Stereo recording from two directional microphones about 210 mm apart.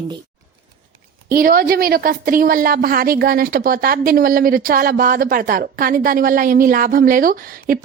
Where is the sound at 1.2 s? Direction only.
45° right (ahead or behind).